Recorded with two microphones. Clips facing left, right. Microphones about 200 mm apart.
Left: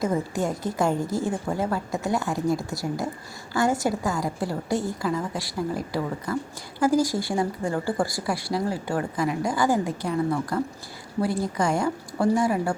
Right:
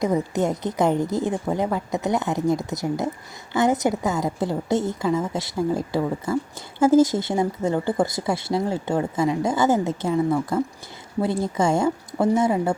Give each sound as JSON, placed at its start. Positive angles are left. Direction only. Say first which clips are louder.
{"t": 0.0, "sound": "speech", "louder": "right 3 dB", "side_deg": -20}